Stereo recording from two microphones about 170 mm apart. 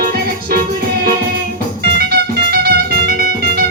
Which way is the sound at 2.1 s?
65° right (ahead or behind).